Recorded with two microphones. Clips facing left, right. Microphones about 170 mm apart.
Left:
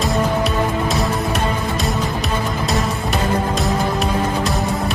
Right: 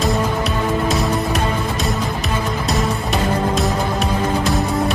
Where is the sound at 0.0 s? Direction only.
Centre (ahead or behind).